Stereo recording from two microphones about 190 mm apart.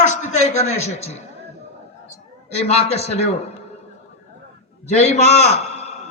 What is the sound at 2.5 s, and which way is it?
Speech, 35° left (ahead or behind).